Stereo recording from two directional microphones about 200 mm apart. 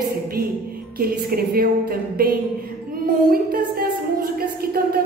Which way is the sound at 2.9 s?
45° right (ahead or behind).